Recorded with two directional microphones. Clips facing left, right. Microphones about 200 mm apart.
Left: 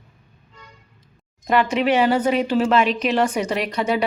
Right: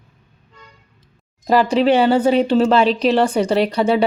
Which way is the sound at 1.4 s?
35° right (ahead or behind).